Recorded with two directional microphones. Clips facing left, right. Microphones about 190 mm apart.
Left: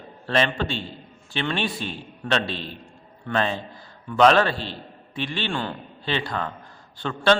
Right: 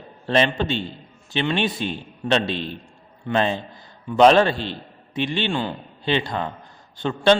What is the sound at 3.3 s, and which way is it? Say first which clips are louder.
A man's voice: right 3 dB; 25° right (ahead or behind).